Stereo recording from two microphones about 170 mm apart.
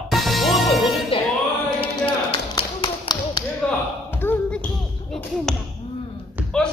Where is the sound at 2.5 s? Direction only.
25° left (ahead or behind).